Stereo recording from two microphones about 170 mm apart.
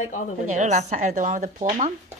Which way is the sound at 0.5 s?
45° right (ahead or behind).